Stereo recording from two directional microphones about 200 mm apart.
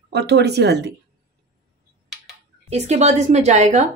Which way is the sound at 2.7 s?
35° right (ahead or behind).